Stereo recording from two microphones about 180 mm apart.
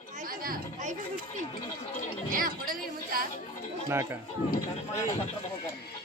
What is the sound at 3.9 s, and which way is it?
Speech, 15° right (ahead or behind).